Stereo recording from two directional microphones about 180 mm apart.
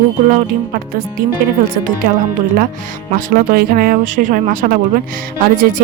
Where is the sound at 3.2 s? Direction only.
50° right (ahead or behind).